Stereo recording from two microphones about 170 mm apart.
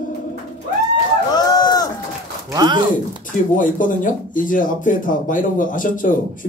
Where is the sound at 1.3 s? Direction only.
25° left (ahead or behind).